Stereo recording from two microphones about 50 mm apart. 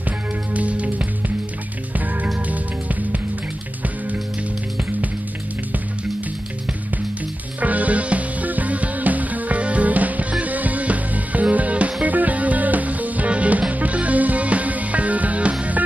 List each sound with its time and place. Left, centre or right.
0.6 s music: right
7.6 s music: right